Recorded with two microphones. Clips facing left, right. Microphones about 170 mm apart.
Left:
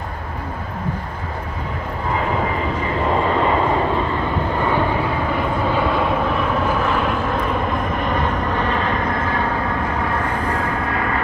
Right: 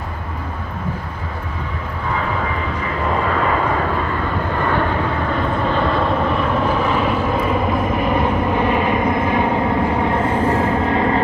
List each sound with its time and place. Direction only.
3.3 s vehicle: 25° left (ahead or behind); by 11.1 s 25° right (ahead or behind)